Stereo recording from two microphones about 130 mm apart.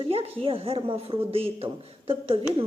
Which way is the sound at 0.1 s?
45° right (ahead or behind).